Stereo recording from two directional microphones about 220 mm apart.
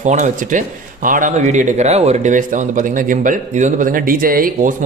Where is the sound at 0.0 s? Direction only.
35° right (ahead or behind).